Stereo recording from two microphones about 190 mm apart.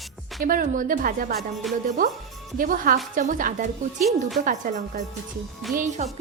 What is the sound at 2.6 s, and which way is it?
A woman's voice, 45° right (ahead or behind).